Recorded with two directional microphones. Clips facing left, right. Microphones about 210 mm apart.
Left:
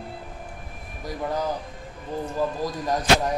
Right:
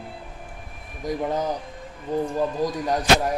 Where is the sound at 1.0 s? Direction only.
20° right (ahead or behind).